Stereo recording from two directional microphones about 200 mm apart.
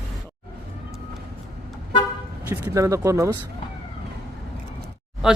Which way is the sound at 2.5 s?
15° right (ahead or behind).